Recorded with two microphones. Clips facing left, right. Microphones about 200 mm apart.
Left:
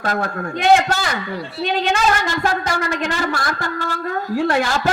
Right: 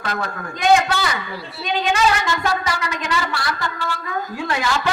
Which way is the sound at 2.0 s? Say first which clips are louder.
Left 1 dB; 45° left (ahead or behind).